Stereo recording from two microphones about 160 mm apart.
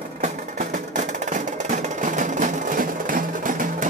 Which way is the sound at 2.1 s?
55° right (ahead or behind).